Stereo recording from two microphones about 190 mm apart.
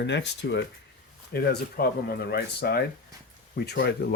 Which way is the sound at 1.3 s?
55° left (ahead or behind).